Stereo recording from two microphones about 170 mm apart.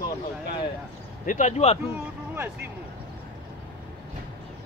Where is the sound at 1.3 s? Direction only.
45° left (ahead or behind).